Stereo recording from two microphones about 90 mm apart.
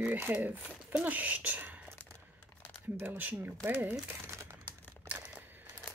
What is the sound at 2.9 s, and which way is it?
Speech, 20° right (ahead or behind).